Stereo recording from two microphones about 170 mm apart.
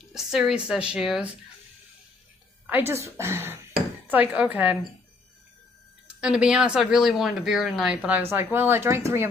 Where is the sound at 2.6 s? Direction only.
10° right (ahead or behind).